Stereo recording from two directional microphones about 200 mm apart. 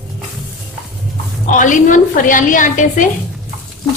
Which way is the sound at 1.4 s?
40° left (ahead or behind).